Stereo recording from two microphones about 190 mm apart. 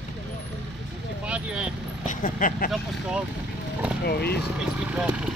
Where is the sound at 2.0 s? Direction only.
45° left (ahead or behind).